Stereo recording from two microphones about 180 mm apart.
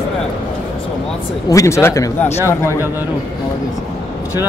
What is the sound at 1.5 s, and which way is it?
Speech, 15° left (ahead or behind).